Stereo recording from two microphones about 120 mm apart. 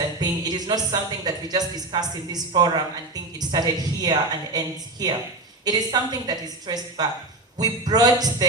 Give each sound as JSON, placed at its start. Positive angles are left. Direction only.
{"t": 0.2, "sound": "a woman's voice", "side_deg": -35}